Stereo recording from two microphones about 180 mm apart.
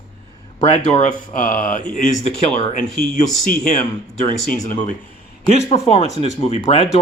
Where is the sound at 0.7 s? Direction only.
35° left (ahead or behind).